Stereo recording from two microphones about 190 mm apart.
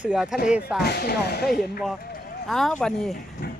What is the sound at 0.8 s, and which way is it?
Speech, 55° left (ahead or behind).